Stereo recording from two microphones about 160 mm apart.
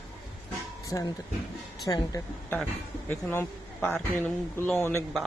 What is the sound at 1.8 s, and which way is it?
A man's voice, 20° left (ahead or behind).